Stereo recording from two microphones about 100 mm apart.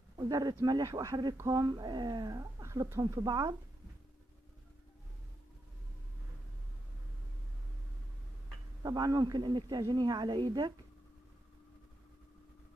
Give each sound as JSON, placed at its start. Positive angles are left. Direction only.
{"t": 0.2, "sound": "a woman's voice", "side_deg": -40}
{"t": 8.8, "sound": "a woman's voice", "side_deg": -40}